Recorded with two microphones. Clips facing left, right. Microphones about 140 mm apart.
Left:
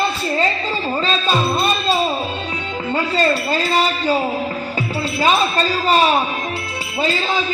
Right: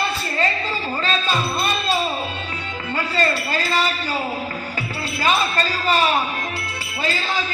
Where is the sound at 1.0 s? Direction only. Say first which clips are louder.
Left 3 dB; 25° left (ahead or behind).